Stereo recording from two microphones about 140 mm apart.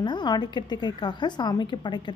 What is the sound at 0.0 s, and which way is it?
A woman's voice, 30° left (ahead or behind).